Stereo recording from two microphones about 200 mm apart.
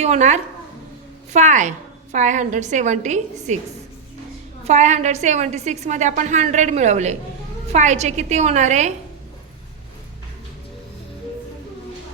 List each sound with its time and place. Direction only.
0.0 s a woman's voice: 35° right (ahead or behind)
4.6 s a woman's voice: 35° right (ahead or behind)